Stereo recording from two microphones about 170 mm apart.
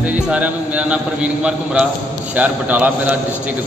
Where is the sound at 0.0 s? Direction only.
5° right (ahead or behind).